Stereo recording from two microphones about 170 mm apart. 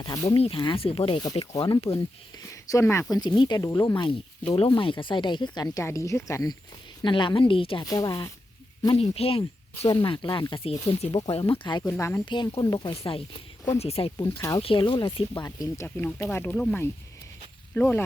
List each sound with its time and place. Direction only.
0.0 s speech: 20° left (ahead or behind)
0.3 s speech: 35° left (ahead or behind)
9.0 s speech: 35° left (ahead or behind)
9.4 s speech: 20° left (ahead or behind)
11.8 s speech: 15° left (ahead or behind)
12.2 s speech: 25° left (ahead or behind)
13.0 s speech: 35° left (ahead or behind)
14.3 s speech: 20° left (ahead or behind)
14.6 s speech: 30° left (ahead or behind); by 18.0 s 10° left (ahead or behind)